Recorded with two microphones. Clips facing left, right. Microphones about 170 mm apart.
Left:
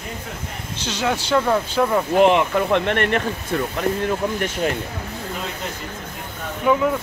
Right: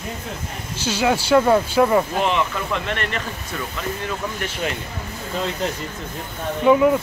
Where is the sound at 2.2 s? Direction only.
60° left (ahead or behind).